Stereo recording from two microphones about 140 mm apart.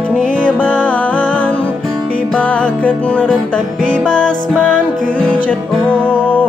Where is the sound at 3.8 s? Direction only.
10° right (ahead or behind).